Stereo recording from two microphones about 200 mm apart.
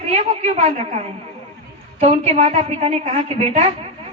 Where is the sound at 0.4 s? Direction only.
35° right (ahead or behind).